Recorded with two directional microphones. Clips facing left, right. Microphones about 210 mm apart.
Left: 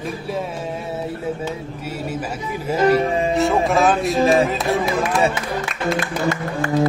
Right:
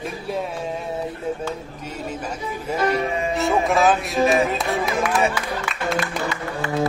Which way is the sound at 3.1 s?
35° left (ahead or behind).